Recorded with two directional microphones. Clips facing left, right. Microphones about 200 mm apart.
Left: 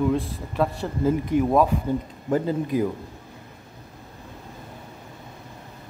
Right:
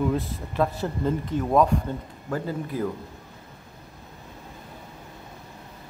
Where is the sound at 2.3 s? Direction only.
20° left (ahead or behind).